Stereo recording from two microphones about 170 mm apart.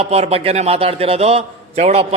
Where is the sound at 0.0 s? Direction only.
35° right (ahead or behind).